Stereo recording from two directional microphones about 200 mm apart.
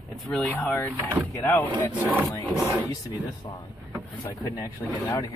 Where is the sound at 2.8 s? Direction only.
20° left (ahead or behind).